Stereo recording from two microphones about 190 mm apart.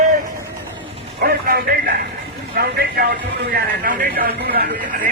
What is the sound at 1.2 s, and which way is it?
Speech, 50° right (ahead or behind).